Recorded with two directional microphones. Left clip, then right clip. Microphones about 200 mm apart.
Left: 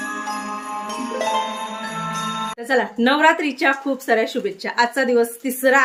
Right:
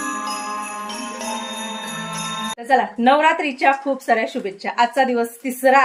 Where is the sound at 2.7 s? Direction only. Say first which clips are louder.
Right 3 dB; 20° left (ahead or behind).